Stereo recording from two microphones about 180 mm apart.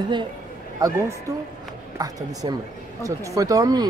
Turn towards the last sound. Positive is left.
turn(degrees=-20)  # may be behind; listen again after turning